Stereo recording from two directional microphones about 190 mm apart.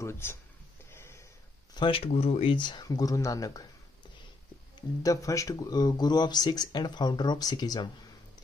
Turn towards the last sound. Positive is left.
turn(degrees=20)  # may be behind; listen again after turning